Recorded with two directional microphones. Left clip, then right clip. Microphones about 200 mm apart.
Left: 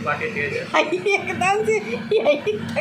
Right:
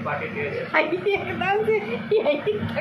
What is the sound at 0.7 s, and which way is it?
A woman's voice, 15° left (ahead or behind).